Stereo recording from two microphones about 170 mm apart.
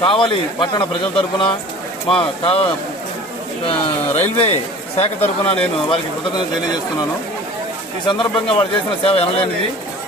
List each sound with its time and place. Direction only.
0.0 s a man's voice: 30° left (ahead or behind)
4.2 s a man's voice: 40° left (ahead or behind)
8.1 s a man's voice: 30° left (ahead or behind)